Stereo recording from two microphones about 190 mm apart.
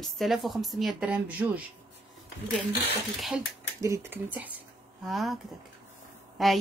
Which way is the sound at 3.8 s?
15° right (ahead or behind).